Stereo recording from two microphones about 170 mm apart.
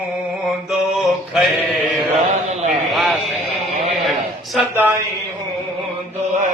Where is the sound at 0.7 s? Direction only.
Centre (ahead or behind).